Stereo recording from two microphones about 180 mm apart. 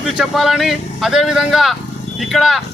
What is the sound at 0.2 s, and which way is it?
A man's voice, centre (ahead or behind).